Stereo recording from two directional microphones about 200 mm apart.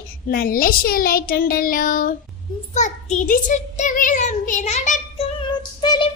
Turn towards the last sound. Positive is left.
turn(degrees=25)  # may be behind; listen again after turning